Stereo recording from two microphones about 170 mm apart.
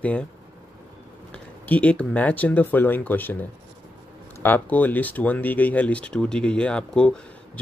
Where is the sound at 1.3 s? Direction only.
10° left (ahead or behind).